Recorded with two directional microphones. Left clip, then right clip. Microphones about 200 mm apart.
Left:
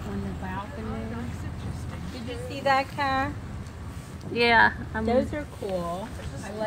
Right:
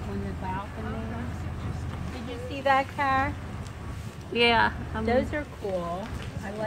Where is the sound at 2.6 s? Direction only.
45° left (ahead or behind).